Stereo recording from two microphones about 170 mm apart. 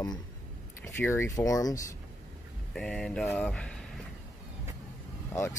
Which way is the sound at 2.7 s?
5° left (ahead or behind).